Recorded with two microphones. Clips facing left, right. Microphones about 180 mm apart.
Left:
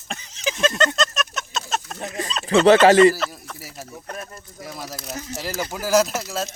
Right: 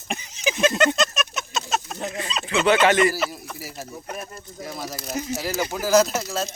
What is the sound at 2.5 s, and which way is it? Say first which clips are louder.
Speech: left 6 dB; 35° left (ahead or behind).